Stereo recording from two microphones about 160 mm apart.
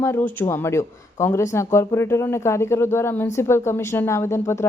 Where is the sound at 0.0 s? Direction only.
15° left (ahead or behind).